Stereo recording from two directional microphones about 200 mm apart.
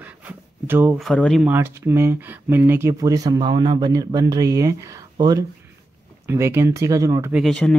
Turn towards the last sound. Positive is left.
turn(degrees=0)  # may be behind; listen again after turning